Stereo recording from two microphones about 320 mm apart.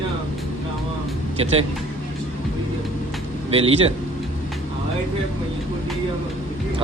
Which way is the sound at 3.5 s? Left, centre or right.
Centre.